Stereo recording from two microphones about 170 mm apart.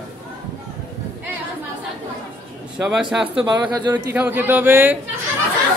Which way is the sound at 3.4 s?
25° right (ahead or behind).